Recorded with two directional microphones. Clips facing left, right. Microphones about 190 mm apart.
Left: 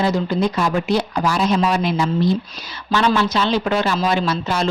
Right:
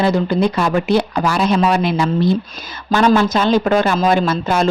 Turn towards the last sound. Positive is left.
turn(degrees=-50)  # may be behind; listen again after turning